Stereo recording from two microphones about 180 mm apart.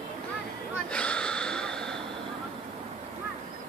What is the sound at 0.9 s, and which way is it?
Snort, 5° left (ahead or behind).